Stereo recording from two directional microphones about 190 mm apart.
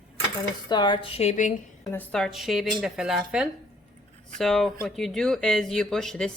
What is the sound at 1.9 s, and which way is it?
Speech, 5° left (ahead or behind).